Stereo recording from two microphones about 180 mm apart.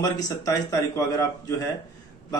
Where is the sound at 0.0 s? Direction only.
20° left (ahead or behind).